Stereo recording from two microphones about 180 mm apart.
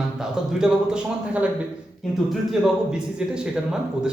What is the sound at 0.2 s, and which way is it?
Speech, 5° right (ahead or behind).